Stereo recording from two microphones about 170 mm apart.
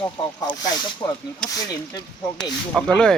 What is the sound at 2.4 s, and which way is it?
Speech, 5° left (ahead or behind).